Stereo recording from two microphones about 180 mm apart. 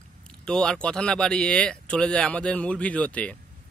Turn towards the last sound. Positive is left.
turn(degrees=5)  # may be behind; listen again after turning